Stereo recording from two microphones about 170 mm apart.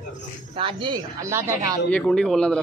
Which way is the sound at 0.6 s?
30° right (ahead or behind).